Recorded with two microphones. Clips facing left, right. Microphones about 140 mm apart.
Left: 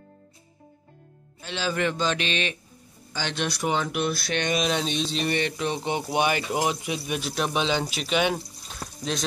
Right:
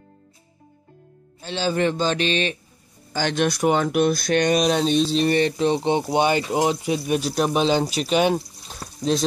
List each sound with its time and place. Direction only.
1.4 s speech: 35° right (ahead or behind)
3.1 s speech: 50° right (ahead or behind)